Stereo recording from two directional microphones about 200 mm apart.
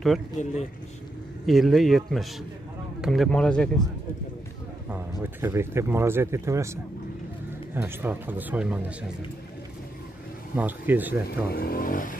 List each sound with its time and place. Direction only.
1.4 s speech: centre (ahead or behind)
4.8 s speech: 10° right (ahead or behind)
10.5 s speech: 10° right (ahead or behind)
11.4 s speech: 50° left (ahead or behind)